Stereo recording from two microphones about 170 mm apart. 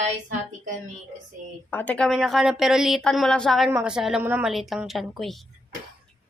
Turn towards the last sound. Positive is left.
turn(degrees=0)  # may be behind; listen again after turning